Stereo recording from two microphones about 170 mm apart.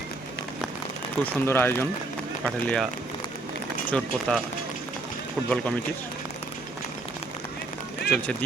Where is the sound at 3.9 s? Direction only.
5° left (ahead or behind).